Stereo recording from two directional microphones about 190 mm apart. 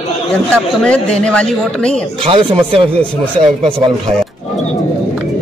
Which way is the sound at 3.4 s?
25° right (ahead or behind).